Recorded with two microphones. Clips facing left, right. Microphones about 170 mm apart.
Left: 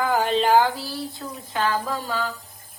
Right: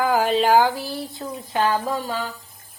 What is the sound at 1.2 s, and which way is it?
Speech, 30° right (ahead or behind).